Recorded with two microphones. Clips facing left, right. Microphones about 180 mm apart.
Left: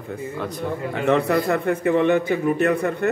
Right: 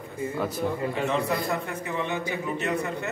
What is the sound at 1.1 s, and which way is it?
A man's voice, 65° left (ahead or behind).